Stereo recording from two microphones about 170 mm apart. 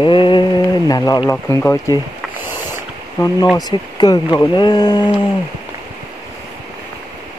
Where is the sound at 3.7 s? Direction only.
25° left (ahead or behind).